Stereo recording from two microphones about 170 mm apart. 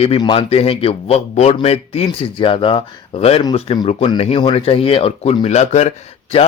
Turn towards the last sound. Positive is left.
turn(degrees=40)  # may be behind; listen again after turning